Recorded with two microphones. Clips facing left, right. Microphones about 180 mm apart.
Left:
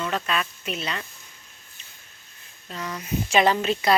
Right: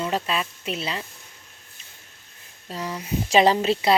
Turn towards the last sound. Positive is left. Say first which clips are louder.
# right 2 dB
turn(degrees=-30)  # may be behind; listen again after turning